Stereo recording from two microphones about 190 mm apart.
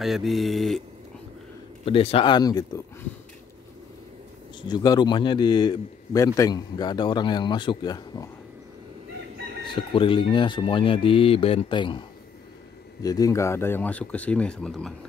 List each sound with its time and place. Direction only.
0.0 s mantra: centre (ahead or behind)
1.9 s a man's voice: 30° left (ahead or behind)
4.6 s a man's voice: 25° left (ahead or behind)
9.7 s a man's voice: 25° left (ahead or behind)
13.0 s speech: 20° left (ahead or behind); by 15.0 s 5° left (ahead or behind)